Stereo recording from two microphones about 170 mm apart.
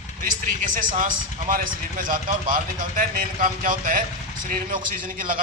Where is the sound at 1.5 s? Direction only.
55° right (ahead or behind).